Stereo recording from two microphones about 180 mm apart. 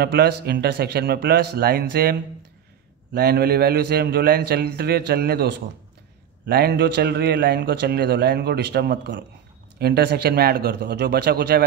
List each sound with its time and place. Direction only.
0.0 s a man's voice: 65° right (ahead or behind)